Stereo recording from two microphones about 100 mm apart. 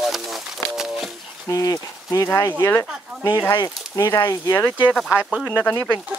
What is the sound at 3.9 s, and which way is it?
Speech, 30° left (ahead or behind).